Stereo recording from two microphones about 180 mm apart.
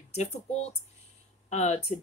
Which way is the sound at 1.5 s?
40° left (ahead or behind).